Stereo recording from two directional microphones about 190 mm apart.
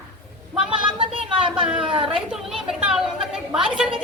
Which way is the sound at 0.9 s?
30° right (ahead or behind).